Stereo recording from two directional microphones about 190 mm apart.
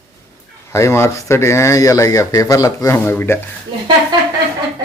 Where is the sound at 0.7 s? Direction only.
15° left (ahead or behind).